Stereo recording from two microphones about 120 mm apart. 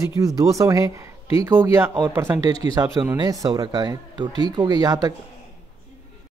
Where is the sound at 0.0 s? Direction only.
25° right (ahead or behind).